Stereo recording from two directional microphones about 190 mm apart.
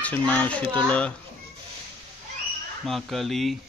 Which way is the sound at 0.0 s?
10° left (ahead or behind).